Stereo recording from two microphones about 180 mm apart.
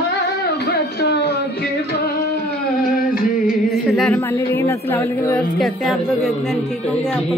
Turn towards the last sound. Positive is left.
turn(degrees=0)  # may be behind; listen again after turning